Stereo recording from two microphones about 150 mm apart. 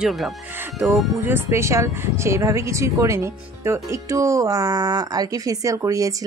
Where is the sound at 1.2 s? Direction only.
15° right (ahead or behind).